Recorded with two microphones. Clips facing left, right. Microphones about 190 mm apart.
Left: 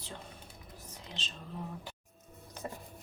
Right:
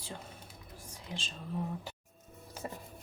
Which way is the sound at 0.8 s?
10° right (ahead or behind).